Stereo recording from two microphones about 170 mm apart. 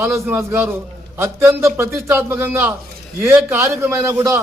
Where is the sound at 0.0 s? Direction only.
15° right (ahead or behind).